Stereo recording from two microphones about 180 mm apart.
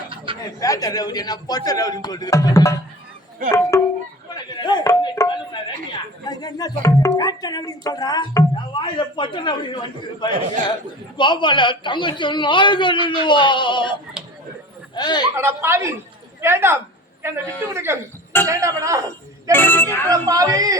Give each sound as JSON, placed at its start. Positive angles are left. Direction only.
{"t": 0.3, "sound": "a sound", "side_deg": -30}
{"t": 0.6, "sound": "speech", "side_deg": 20}
{"t": 3.7, "sound": "speech", "side_deg": 15}
{"t": 11.2, "sound": "speech", "side_deg": 25}
{"t": 14.9, "sound": "speech", "side_deg": 25}
{"t": 15.4, "sound": "speech", "side_deg": -15}
{"t": 19.5, "sound": "speech", "side_deg": 10}
{"t": 20.1, "sound": "speech", "side_deg": -20}